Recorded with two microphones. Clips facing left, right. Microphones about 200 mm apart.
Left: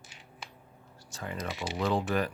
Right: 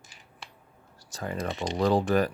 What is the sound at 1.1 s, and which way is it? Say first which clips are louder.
Speech: right 5 dB; 40° right (ahead or behind).